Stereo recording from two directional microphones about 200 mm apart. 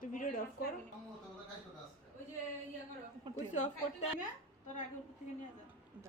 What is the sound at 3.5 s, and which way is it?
Speech, 35° left (ahead or behind).